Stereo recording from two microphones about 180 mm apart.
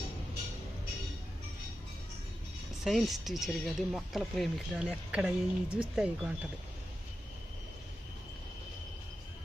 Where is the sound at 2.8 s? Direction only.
Centre (ahead or behind).